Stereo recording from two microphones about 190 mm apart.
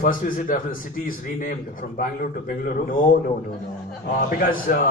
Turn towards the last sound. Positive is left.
turn(degrees=45)  # may be behind; listen again after turning